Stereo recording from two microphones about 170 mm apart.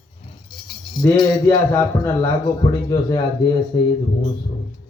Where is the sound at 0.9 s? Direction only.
20° left (ahead or behind).